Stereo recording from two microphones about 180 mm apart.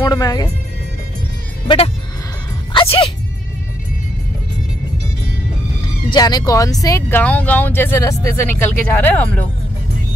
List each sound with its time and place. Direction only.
0.0 s speech: 20° left (ahead or behind)
1.7 s speech: 25° left (ahead or behind)
2.7 s music: 30° left (ahead or behind)
6.1 s speech: 20° left (ahead or behind)